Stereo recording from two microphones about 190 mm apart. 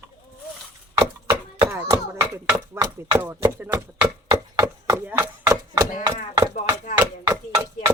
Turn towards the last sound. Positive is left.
turn(degrees=-15)  # may be behind; listen again after turning